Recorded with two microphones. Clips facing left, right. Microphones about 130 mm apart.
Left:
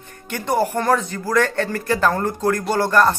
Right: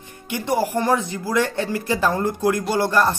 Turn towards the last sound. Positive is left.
turn(degrees=-15)  # may be behind; listen again after turning